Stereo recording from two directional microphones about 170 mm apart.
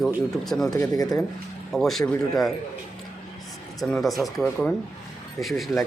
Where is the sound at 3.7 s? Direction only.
Centre (ahead or behind).